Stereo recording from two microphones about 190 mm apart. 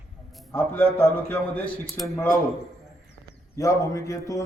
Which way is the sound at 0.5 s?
10° left (ahead or behind).